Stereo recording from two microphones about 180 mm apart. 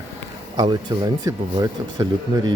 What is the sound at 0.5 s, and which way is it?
Speech, 25° right (ahead or behind).